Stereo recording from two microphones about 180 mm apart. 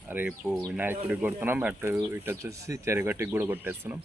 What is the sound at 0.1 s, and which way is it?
Speech, 10° right (ahead or behind).